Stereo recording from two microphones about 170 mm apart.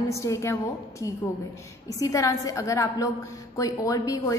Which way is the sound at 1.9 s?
20° left (ahead or behind).